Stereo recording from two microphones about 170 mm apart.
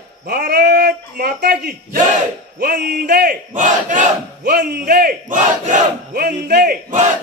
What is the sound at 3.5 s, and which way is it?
Crowd, 50° right (ahead or behind).